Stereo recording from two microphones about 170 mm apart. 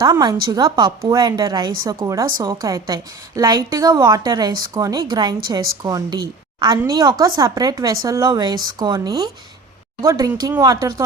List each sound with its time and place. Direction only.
0.0 s a woman's voice: 25° right (ahead or behind)